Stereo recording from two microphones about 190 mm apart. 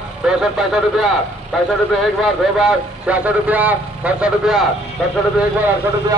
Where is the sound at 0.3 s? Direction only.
5° right (ahead or behind).